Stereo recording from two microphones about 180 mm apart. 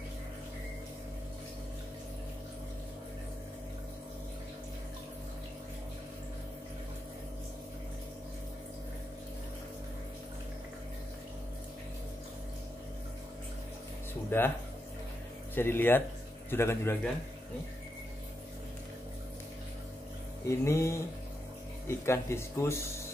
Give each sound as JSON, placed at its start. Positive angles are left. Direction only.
{"t": 14.3, "sound": "speech", "side_deg": 10}
{"t": 15.5, "sound": "speech", "side_deg": 10}
{"t": 20.4, "sound": "speech", "side_deg": 15}